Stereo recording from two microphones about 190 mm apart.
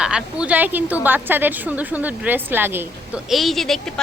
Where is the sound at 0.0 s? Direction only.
5° right (ahead or behind).